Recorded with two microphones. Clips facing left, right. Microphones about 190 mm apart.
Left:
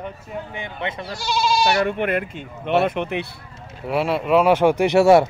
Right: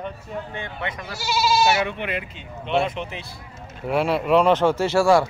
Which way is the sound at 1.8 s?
50° left (ahead or behind).